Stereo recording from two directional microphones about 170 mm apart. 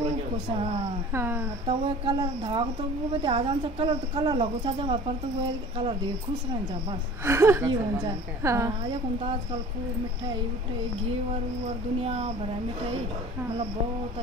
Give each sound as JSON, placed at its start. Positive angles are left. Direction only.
{"t": 1.1, "sound": "a woman's voice", "side_deg": -15}
{"t": 1.7, "sound": "speech", "side_deg": -30}
{"t": 7.2, "sound": "a woman's voice", "side_deg": -15}
{"t": 11.6, "sound": "speech", "side_deg": -35}